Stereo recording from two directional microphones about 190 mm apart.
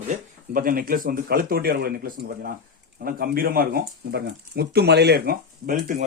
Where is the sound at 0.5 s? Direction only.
50° right (ahead or behind).